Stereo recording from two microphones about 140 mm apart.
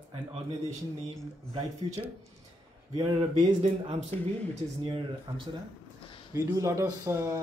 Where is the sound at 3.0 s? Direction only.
35° right (ahead or behind).